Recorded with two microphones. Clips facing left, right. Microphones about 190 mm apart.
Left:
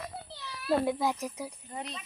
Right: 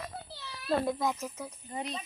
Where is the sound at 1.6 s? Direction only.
10° right (ahead or behind).